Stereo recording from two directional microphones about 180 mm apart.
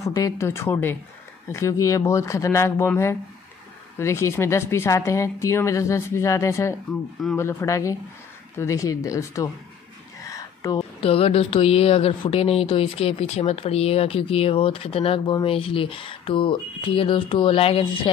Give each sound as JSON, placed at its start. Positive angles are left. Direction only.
{"t": 0.0, "sound": "speech", "side_deg": 15}
{"t": 4.0, "sound": "speech", "side_deg": 15}
{"t": 10.2, "sound": "a sound", "side_deg": 20}
{"t": 11.0, "sound": "speech", "side_deg": 30}